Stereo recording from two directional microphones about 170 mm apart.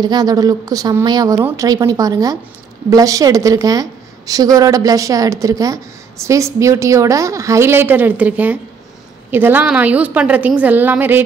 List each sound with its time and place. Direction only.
0.0 s a woman's voice: 25° right (ahead or behind)